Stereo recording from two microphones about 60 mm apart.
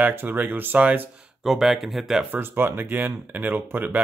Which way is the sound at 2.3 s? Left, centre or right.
Right.